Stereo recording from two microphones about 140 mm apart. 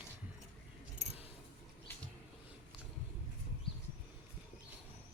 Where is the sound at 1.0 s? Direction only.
55° right (ahead or behind).